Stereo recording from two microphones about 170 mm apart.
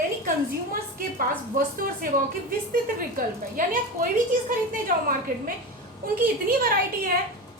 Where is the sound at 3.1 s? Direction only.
55° right (ahead or behind).